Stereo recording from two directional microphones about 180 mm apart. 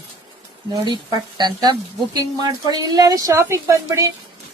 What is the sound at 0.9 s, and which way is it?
Speech, 25° right (ahead or behind).